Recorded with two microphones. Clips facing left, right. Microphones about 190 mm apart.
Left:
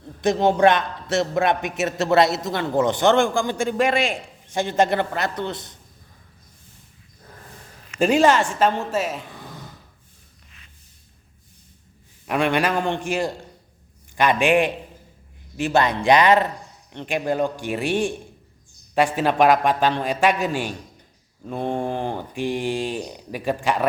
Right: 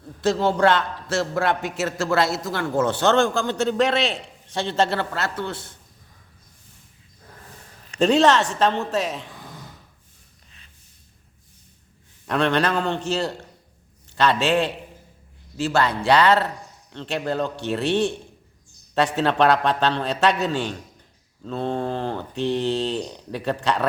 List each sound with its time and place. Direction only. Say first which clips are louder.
0.2 s a man's voice: left 2 dB; 15° left (ahead or behind)
7.9 s a man's voice: even; 10° left (ahead or behind)
12.3 s a man's voice: even; 10° left (ahead or behind)